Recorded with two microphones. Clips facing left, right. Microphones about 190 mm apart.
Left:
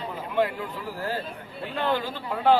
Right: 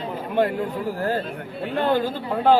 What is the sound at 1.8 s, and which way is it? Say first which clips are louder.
Speech: right 5 dB; 50° right (ahead or behind).